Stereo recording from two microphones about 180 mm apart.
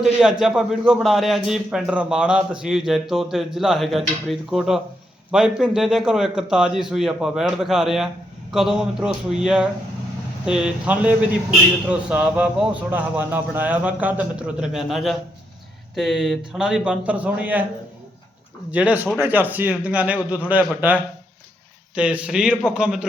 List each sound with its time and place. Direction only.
0.0 s a man's voice: 5° right (ahead or behind)
18.7 s a man's voice: 10° right (ahead or behind)